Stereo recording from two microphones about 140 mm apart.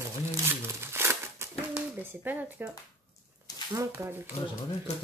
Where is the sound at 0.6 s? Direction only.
15° right (ahead or behind).